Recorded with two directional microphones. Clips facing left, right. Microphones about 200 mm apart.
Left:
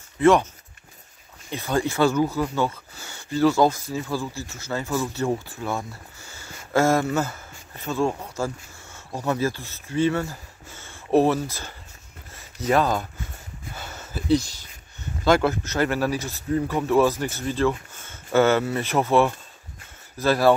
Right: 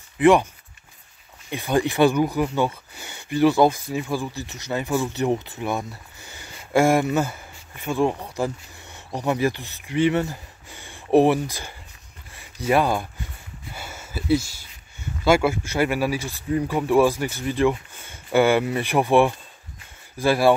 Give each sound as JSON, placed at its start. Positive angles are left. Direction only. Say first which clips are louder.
{"t": 0.2, "sound": "speech", "louder": "right 1 dB", "side_deg": -15}
{"t": 1.5, "sound": "speech", "louder": "right 2 dB", "side_deg": -15}
{"t": 13.7, "sound": "a sound", "louder": "right 1 dB", "side_deg": -10}
{"t": 15.2, "sound": "speech", "louder": "right 1 dB", "side_deg": -10}